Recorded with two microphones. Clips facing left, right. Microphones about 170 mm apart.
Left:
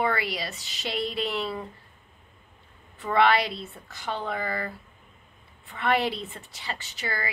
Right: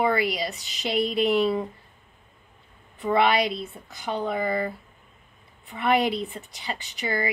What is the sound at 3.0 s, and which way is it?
Speech, 15° right (ahead or behind).